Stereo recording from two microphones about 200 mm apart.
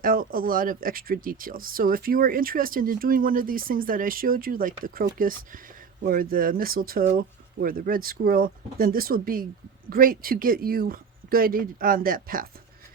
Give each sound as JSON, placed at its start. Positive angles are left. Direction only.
{"t": 0.0, "sound": "speech", "side_deg": -45}